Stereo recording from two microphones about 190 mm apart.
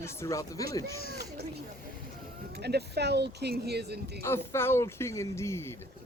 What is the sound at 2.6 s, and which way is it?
Speech, 60° right (ahead or behind).